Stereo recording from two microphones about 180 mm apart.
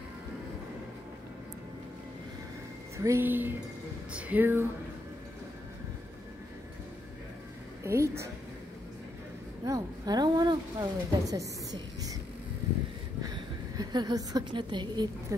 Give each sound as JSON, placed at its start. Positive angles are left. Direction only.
{"t": 3.0, "sound": "speech", "side_deg": -15}
{"t": 7.8, "sound": "speech", "side_deg": -15}
{"t": 9.7, "sound": "a sound", "side_deg": -20}
{"t": 13.2, "sound": "a woman's voice", "side_deg": -20}